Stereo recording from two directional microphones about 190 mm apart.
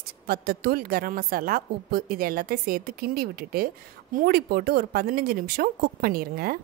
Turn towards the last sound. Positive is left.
turn(degrees=-50)  # may be behind; listen again after turning